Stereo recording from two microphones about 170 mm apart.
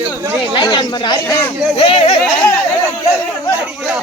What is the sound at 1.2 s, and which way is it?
Speech, 15° left (ahead or behind).